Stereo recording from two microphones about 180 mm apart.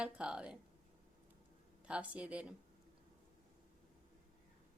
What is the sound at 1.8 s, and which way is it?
Speech, 5° right (ahead or behind).